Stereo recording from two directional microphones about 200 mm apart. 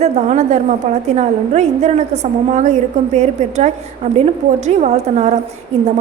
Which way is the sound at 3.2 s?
35° right (ahead or behind).